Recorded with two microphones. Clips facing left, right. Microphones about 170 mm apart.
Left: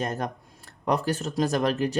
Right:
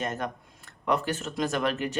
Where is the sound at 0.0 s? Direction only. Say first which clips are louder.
Left 2 dB; 35° left (ahead or behind).